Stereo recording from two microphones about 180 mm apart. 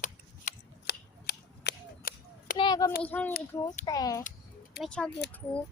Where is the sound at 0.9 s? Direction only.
60° left (ahead or behind).